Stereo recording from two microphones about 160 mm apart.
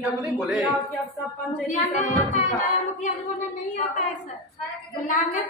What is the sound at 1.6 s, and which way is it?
Speech, 50° left (ahead or behind).